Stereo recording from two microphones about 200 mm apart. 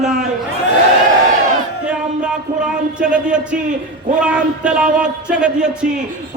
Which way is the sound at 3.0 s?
5° right (ahead or behind).